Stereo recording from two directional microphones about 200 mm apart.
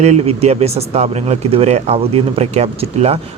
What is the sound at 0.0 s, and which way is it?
Speech, 35° right (ahead or behind).